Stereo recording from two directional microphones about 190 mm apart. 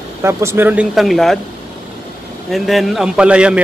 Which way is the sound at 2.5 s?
Centre (ahead or behind).